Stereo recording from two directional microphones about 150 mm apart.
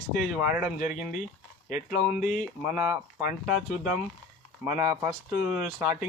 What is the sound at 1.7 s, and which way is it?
Speech, 55° left (ahead or behind).